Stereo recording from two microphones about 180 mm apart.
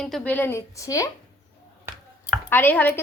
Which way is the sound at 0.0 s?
5° left (ahead or behind).